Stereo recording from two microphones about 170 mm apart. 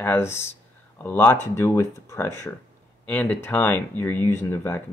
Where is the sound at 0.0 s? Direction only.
15° left (ahead or behind).